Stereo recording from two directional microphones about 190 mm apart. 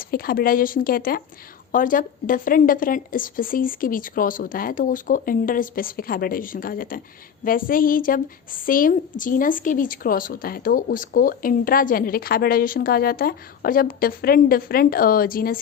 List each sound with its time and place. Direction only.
0.0 s a woman's voice: 50° left (ahead or behind)